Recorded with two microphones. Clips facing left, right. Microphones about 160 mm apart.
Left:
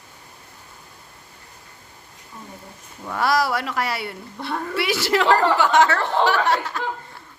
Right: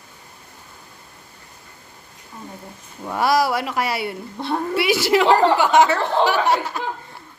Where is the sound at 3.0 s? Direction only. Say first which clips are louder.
Right 2 dB; 15° right (ahead or behind).